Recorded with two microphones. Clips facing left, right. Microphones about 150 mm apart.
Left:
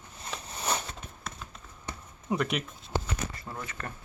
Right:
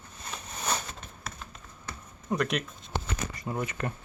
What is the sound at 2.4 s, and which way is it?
Speech, 5° left (ahead or behind).